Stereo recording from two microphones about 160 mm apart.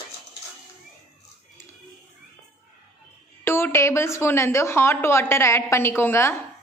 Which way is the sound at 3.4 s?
15° left (ahead or behind).